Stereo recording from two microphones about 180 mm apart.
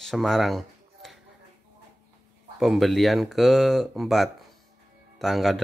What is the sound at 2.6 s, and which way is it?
Speech, centre (ahead or behind).